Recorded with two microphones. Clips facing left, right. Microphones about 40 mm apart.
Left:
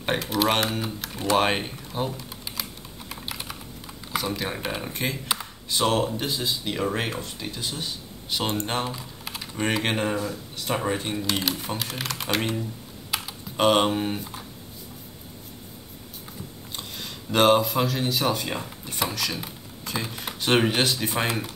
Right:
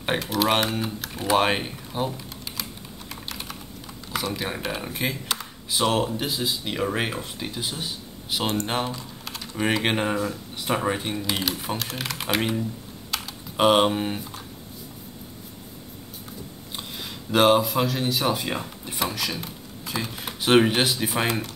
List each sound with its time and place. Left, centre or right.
0.0 s speech: centre
3.1 s computer keyboard: centre
4.1 s speech: centre
8.9 s typing: centre
9.6 s speech: centre
10.7 s speech: centre
13.1 s typing: centre
13.6 s speech: centre
16.7 s speech: centre